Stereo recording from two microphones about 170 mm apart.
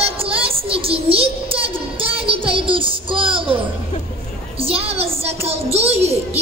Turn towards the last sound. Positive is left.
turn(degrees=-35)  # may be behind; listen again after turning